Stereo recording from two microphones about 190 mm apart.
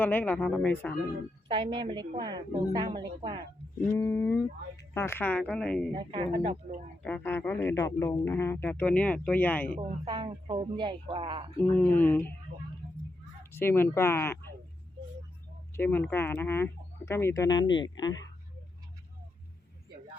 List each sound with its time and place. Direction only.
0.0 s speech: 10° left (ahead or behind)
1.5 s a woman's voice: 25° right (ahead or behind)
3.8 s speech: 15° left (ahead or behind)
5.9 s a woman's voice: 25° right (ahead or behind)
7.0 s speech: 10° left (ahead or behind)
10.1 s a woman's voice: 25° right (ahead or behind)
11.5 s speech: 10° left (ahead or behind)
13.4 s speech: 10° left (ahead or behind)
15.7 s speech: 10° left (ahead or behind)